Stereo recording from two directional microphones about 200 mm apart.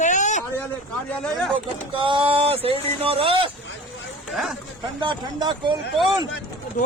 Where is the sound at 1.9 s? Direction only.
25° right (ahead or behind).